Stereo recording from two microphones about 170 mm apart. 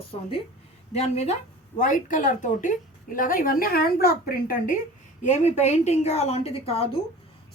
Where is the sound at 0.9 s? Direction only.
40° left (ahead or behind).